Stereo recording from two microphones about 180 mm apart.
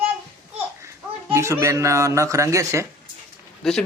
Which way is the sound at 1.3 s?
15° right (ahead or behind).